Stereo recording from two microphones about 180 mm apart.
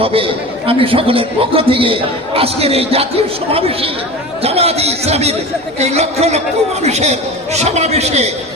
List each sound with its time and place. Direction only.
0.0 s a man's voice: 30° right (ahead or behind)